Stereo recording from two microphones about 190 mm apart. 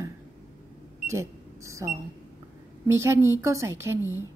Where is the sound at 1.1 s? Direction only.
15° right (ahead or behind).